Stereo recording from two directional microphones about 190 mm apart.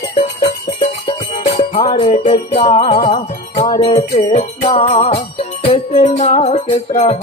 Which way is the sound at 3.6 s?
30° left (ahead or behind).